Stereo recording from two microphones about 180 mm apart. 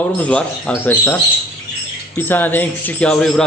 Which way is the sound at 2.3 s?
10° left (ahead or behind).